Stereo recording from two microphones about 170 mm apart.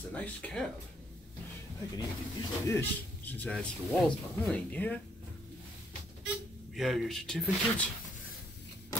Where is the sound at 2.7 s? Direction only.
10° left (ahead or behind).